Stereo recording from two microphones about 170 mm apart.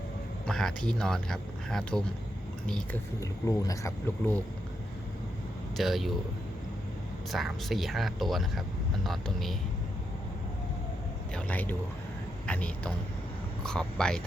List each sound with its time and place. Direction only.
0.4 s speech: 5° left (ahead or behind)
3.2 s speech: 20° left (ahead or behind)
5.7 s speech: centre (ahead or behind)
7.3 s speech: centre (ahead or behind)
11.3 s speech: 10° left (ahead or behind)